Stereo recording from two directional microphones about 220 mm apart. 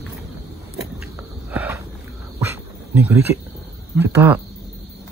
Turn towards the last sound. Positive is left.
turn(degrees=-10)  # may be behind; listen again after turning